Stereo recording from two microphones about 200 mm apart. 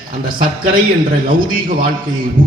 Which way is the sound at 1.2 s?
45° right (ahead or behind).